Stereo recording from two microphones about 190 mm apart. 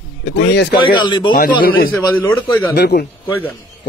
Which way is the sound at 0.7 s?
25° left (ahead or behind).